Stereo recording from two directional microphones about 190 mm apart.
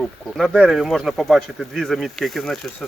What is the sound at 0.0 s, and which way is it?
Speech, centre (ahead or behind).